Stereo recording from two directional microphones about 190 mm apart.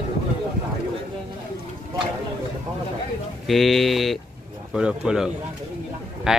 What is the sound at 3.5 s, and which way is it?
Speech, centre (ahead or behind).